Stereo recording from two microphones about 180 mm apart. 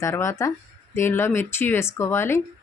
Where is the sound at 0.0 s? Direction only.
15° left (ahead or behind).